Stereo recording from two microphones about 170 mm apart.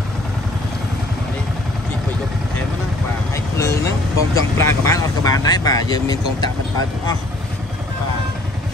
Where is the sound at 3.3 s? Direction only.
15° left (ahead or behind).